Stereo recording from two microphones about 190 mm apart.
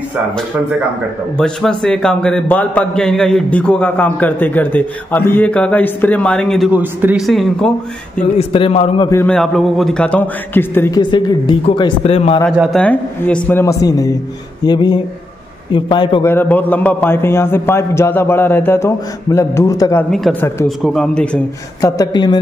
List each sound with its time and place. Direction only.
1.3 s a man's voice: 5° left (ahead or behind)
6.7 s a man's voice: 10° right (ahead or behind)
7.2 s speech: centre (ahead or behind)
8.4 s a man's voice: 30° left (ahead or behind)
9.1 s a man's voice: 5° left (ahead or behind)
11.0 s speech: 25° left (ahead or behind)
12.4 s a man's voice: centre (ahead or behind); by 16.3 s 25° left (ahead or behind)
16.3 s a man's voice: 10° left (ahead or behind)
20.1 s speech: centre (ahead or behind)
21.8 s speech: 20° left (ahead or behind)